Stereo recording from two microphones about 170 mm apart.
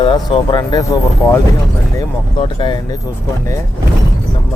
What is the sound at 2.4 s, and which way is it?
Speech, 25° left (ahead or behind).